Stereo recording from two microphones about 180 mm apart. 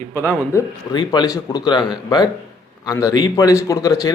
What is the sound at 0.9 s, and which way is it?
A man's voice, 25° left (ahead or behind).